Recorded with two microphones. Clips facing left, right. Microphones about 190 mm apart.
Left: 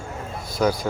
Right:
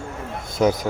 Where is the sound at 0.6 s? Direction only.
20° right (ahead or behind).